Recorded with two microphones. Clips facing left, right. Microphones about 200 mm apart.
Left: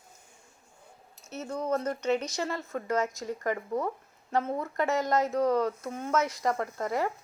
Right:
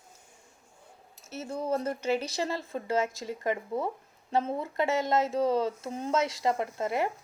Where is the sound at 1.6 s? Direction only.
30° right (ahead or behind).